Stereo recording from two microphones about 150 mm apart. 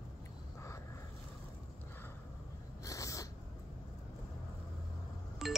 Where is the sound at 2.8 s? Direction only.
20° left (ahead or behind).